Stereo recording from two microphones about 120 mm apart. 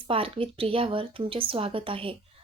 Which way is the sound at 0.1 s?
50° right (ahead or behind).